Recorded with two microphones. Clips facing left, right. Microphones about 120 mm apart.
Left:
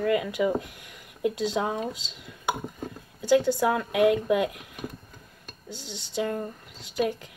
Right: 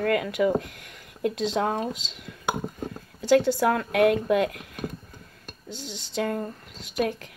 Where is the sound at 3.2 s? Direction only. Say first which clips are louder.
Right 1 dB; 15° left (ahead or behind).